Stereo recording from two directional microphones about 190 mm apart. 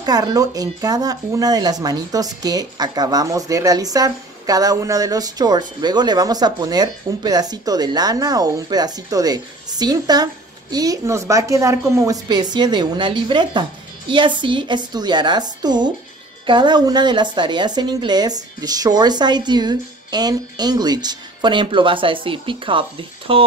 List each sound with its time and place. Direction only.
0.0 s speech: 20° right (ahead or behind)